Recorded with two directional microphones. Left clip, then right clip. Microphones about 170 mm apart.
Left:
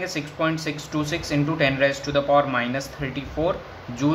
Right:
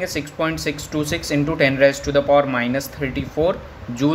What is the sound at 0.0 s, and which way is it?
Speech, 40° right (ahead or behind).